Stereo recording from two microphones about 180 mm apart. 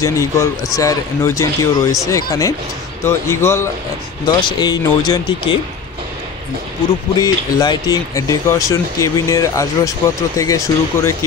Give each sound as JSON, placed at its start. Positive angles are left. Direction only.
{"t": 0.0, "sound": "speech", "side_deg": 20}
{"t": 7.2, "sound": "speech", "side_deg": 20}